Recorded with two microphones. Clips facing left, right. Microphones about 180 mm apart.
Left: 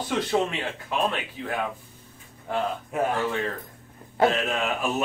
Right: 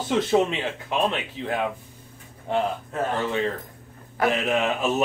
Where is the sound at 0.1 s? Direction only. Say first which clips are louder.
Right 4 dB; 20° right (ahead or behind).